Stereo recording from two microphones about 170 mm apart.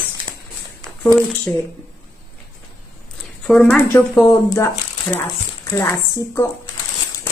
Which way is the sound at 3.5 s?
10° left (ahead or behind).